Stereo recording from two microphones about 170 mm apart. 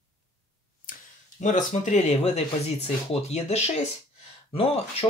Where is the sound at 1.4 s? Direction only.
50° left (ahead or behind).